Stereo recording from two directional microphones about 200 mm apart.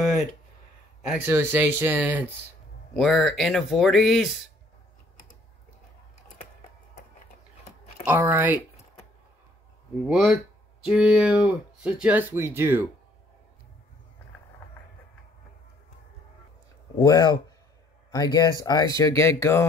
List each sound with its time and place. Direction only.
1.0 s speech: 5° right (ahead or behind)
8.0 s speech: 10° right (ahead or behind)
10.0 s speech: centre (ahead or behind)
17.0 s speech: 20° left (ahead or behind)